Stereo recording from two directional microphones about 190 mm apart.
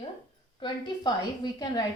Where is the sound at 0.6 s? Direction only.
25° left (ahead or behind).